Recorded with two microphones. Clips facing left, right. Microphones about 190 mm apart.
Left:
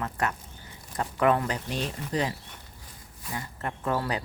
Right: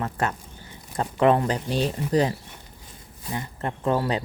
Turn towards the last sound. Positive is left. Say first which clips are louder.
# right 5 dB
turn(degrees=-25)  # may be behind; listen again after turning